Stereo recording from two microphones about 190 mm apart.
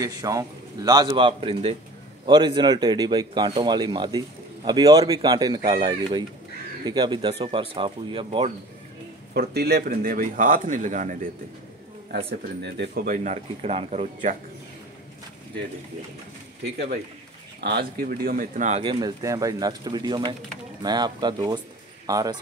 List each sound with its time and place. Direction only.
0.0 s speech: 20° right (ahead or behind)
9.3 s speech: 55° right (ahead or behind); by 11.1 s 40° right (ahead or behind)
12.6 s speech: 60° right (ahead or behind); by 14.3 s 35° right (ahead or behind)
17.6 s speech: 55° right (ahead or behind); by 22.4 s 20° right (ahead or behind)